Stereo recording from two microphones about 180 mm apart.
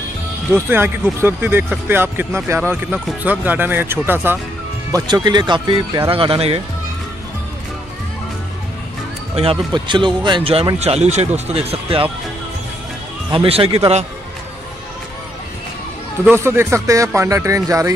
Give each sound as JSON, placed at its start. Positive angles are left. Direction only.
{"t": 0.5, "sound": "speech", "side_deg": -10}
{"t": 4.9, "sound": "speech", "side_deg": -25}
{"t": 9.3, "sound": "speech", "side_deg": -30}
{"t": 13.3, "sound": "speech", "side_deg": -30}
{"t": 16.3, "sound": "speech", "side_deg": -15}